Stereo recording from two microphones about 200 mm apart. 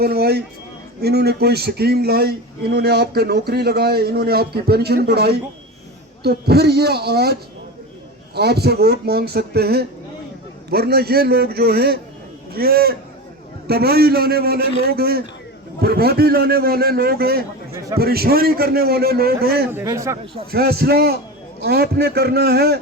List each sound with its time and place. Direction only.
0.0 s a man's voice: 50° right (ahead or behind)
8.4 s a man's voice: 55° right (ahead or behind)
19.7 s a man's voice: 15° right (ahead or behind)
20.5 s a man's voice: 50° right (ahead or behind)